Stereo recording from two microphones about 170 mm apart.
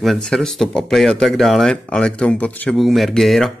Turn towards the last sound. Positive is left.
turn(degrees=0)  # may be behind; listen again after turning